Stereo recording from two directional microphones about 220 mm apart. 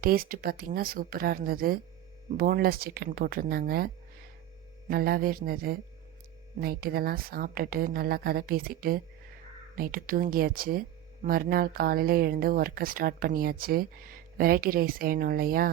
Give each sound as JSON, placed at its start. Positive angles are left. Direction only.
{"t": 0.0, "sound": "a woman's voice", "side_deg": -40}